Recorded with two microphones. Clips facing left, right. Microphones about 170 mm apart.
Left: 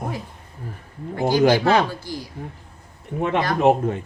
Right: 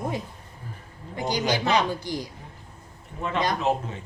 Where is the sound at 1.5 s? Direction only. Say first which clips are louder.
Left 5 dB; 20° right (ahead or behind).